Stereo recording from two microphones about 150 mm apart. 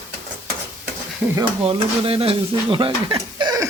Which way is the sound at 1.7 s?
40° right (ahead or behind).